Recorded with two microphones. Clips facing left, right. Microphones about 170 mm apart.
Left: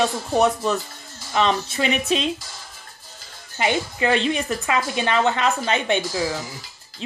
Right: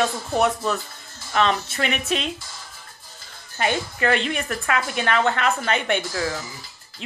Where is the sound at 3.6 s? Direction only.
15° left (ahead or behind).